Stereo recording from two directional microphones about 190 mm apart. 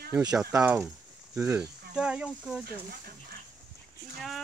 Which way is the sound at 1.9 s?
5° right (ahead or behind).